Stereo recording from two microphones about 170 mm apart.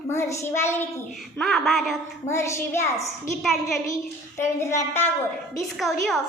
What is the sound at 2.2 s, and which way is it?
Speech, 15° left (ahead or behind).